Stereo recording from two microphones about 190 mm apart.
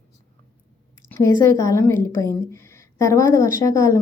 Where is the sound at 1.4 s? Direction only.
15° left (ahead or behind).